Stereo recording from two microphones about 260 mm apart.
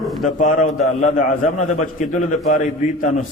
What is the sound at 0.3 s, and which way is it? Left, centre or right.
A man's voice, left.